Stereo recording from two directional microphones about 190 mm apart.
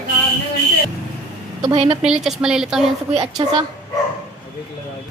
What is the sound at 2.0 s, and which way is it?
Speech, 5° right (ahead or behind).